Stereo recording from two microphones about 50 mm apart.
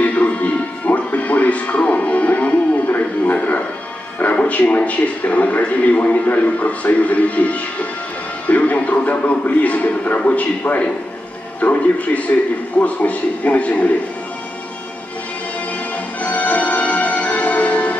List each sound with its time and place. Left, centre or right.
0.0 s music: left
4.2 s a man's voice: left
16.2 s music: left